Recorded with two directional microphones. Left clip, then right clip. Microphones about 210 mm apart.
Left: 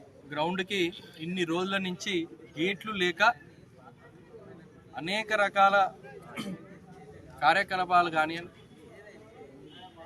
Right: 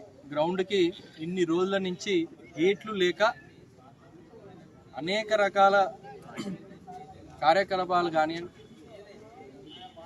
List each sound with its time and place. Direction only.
0.3 s speech: 5° left (ahead or behind)
4.9 s speech: 5° left (ahead or behind)
7.3 s speech: 5° left (ahead or behind)